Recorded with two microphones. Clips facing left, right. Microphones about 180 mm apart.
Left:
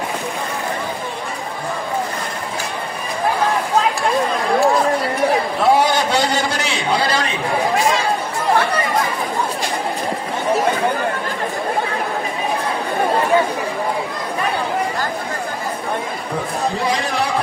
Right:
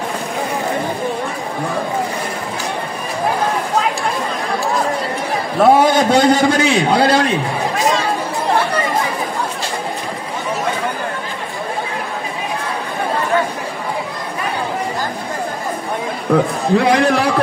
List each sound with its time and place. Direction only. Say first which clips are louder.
5.6 s a man's voice: right 6 dB; 50° right (ahead or behind)
16.7 s a man's voice: right 7 dB; 70° right (ahead or behind)